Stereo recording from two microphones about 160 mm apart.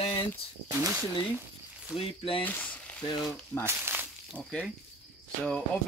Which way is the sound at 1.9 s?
35° left (ahead or behind).